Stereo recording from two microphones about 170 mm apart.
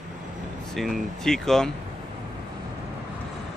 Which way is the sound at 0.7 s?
Centre (ahead or behind).